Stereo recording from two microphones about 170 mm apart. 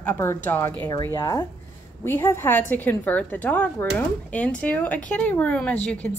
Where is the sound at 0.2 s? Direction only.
15° left (ahead or behind).